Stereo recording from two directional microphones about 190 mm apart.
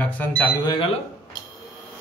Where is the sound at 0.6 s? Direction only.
25° left (ahead or behind).